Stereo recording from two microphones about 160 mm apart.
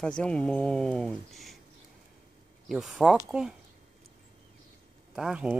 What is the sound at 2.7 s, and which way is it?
Speech, centre (ahead or behind).